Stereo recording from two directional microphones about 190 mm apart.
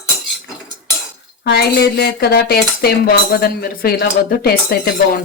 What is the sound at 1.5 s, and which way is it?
Cutlery, 60° left (ahead or behind).